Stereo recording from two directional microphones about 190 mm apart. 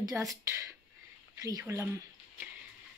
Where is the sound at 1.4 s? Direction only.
15° right (ahead or behind).